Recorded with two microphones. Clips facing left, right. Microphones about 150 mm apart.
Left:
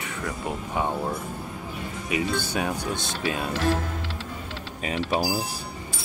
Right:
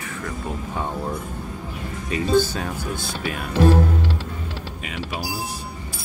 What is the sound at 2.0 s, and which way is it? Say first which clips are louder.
Speech: right 8 dB; 15° left (ahead or behind).